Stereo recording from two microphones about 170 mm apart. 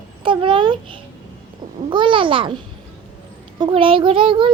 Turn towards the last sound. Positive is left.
turn(degrees=-30)  # may be behind; listen again after turning